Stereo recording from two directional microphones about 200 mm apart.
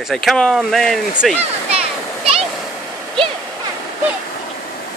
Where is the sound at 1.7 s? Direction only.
30° right (ahead or behind).